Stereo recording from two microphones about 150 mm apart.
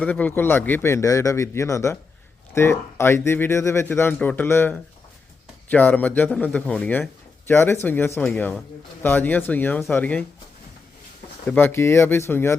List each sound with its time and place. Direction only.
0.0 s a man's voice: 10° left (ahead or behind)
11.4 s a man's voice: 15° left (ahead or behind)